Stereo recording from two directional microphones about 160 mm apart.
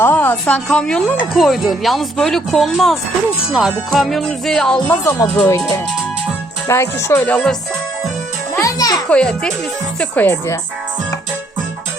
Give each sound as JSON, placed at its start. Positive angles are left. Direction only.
{"t": 0.0, "sound": "speech", "side_deg": 15}
{"t": 6.7, "sound": "music", "side_deg": 15}
{"t": 8.5, "sound": "music", "side_deg": 20}
{"t": 9.0, "sound": "speech", "side_deg": 5}
{"t": 10.0, "sound": "music", "side_deg": 10}